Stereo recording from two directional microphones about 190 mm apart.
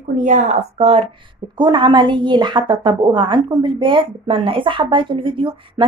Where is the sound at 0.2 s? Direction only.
45° right (ahead or behind).